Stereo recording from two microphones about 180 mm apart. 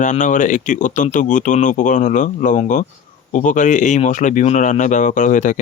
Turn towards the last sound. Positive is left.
turn(degrees=45)  # may be behind; listen again after turning